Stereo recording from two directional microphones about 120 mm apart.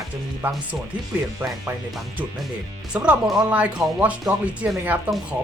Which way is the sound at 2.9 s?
10° right (ahead or behind).